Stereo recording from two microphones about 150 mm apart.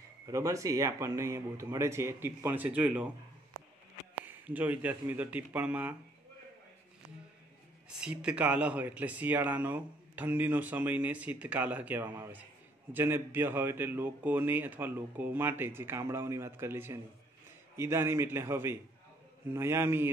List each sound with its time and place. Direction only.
0.3 s speech: 20° right (ahead or behind)
4.2 s speech: 10° right (ahead or behind)
7.9 s speech: 5° right (ahead or behind)